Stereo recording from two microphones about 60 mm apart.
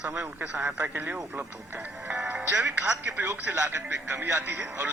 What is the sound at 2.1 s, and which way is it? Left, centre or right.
Music, right.